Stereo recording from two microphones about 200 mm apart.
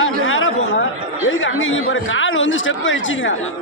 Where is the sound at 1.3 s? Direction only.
80° left.